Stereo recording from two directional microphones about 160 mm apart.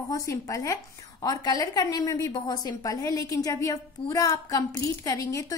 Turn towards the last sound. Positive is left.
turn(degrees=20)  # may be behind; listen again after turning